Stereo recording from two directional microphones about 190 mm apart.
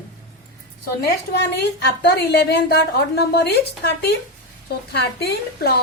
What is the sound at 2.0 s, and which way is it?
A woman's voice, 60° left (ahead or behind).